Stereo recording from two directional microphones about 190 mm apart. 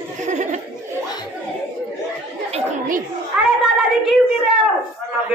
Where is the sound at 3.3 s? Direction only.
5° right (ahead or behind).